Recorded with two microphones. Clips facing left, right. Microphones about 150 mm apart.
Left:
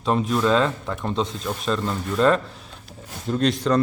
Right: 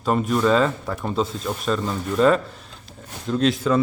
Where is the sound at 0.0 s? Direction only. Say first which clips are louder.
Right 1 dB; centre (ahead or behind).